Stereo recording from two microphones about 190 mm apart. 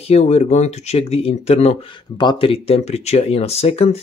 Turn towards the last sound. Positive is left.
turn(degrees=35)  # may be behind; listen again after turning